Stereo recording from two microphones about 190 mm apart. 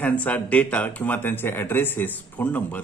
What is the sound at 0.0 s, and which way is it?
Speech, 10° left (ahead or behind).